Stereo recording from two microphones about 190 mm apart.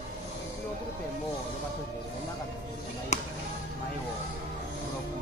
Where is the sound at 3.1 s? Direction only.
35° left (ahead or behind).